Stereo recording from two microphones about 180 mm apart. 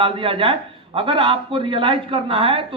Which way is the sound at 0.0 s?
30° right (ahead or behind).